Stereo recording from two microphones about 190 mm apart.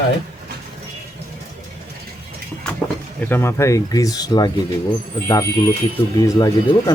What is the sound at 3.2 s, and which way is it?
Speech, 10° left (ahead or behind).